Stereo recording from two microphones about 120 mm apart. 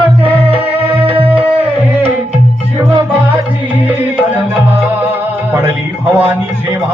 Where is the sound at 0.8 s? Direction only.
50° right (ahead or behind).